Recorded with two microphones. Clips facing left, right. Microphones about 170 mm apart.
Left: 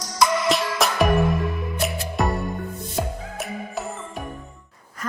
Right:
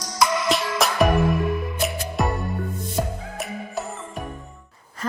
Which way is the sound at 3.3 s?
Centre (ahead or behind).